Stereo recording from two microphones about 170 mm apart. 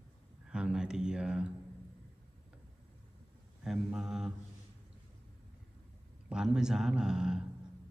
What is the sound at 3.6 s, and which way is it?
Mantra, 5° right (ahead or behind).